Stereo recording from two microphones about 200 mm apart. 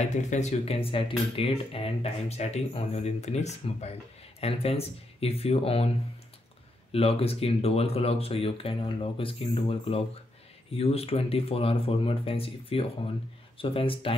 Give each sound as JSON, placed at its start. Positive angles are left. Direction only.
{"t": 0.0, "sound": "speech", "side_deg": 35}
{"t": 6.9, "sound": "speech", "side_deg": 30}